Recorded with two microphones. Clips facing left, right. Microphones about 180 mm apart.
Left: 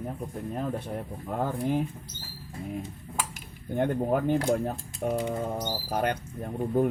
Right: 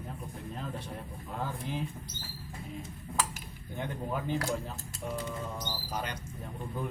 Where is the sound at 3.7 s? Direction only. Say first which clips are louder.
Left 10 dB; 55° left (ahead or behind).